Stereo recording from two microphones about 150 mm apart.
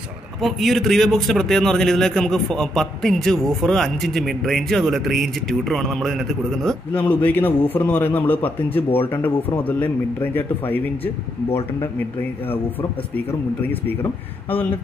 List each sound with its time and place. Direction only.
0.4 s a man's voice: centre (ahead or behind)
9.6 s a man's voice: 10° left (ahead or behind)